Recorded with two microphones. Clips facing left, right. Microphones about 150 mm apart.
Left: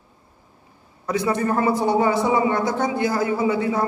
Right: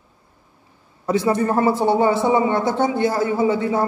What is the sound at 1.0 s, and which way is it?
A man's voice, 25° right (ahead or behind).